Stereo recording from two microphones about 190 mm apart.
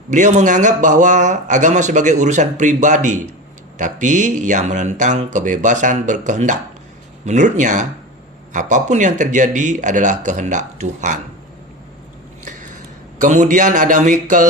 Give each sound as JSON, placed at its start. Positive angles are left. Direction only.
{"t": 0.1, "sound": "speech", "side_deg": -40}
{"t": 13.1, "sound": "speech", "side_deg": -40}